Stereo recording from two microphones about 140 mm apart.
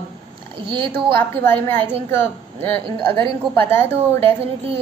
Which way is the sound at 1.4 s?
15° left (ahead or behind).